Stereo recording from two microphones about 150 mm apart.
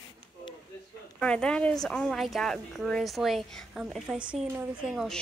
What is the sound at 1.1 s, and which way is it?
Speech, 5° left (ahead or behind).